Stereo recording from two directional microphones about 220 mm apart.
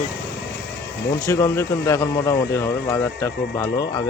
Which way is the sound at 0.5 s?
50° left (ahead or behind).